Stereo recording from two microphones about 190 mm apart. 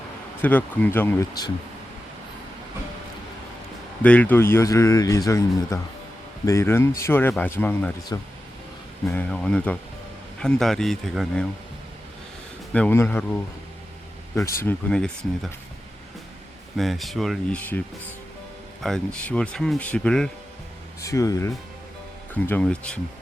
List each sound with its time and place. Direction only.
0.4 s speech: 10° left (ahead or behind)
4.0 s speech: 10° left (ahead or behind)
12.7 s speech: 10° left (ahead or behind)
14.3 s speech: 15° left (ahead or behind)
16.7 s speech: centre (ahead or behind)
21.0 s speech: 15° left (ahead or behind)